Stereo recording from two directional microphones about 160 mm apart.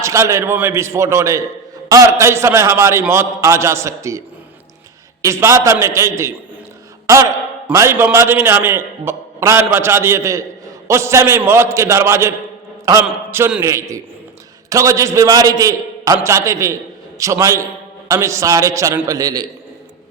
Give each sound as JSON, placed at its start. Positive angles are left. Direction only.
{"t": 0.0, "sound": "a man's voice", "side_deg": -20}
{"t": 5.2, "sound": "a man's voice", "side_deg": -20}
{"t": 12.8, "sound": "mantra", "side_deg": -20}
{"t": 13.6, "sound": "a man's voice", "side_deg": -20}